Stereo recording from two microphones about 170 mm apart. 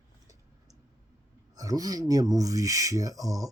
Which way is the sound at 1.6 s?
20° right (ahead or behind).